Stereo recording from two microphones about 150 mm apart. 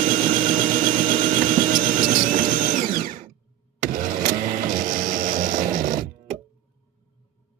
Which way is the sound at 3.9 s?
65° right (ahead or behind).